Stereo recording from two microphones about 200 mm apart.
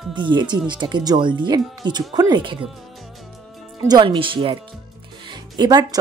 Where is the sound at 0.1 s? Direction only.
25° right (ahead or behind).